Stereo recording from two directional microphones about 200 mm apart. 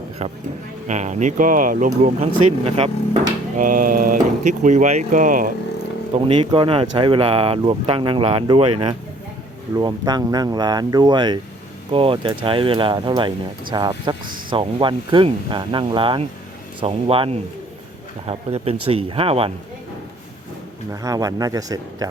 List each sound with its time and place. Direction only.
0.2 s speech: 35° right (ahead or behind)
3.6 s a sound: 45° right (ahead or behind)
4.6 s speech: 35° right (ahead or behind)
6.1 s speech: 25° right (ahead or behind)
20.9 s speech: 15° right (ahead or behind)